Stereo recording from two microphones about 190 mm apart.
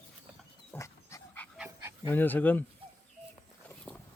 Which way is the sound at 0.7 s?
15° left (ahead or behind).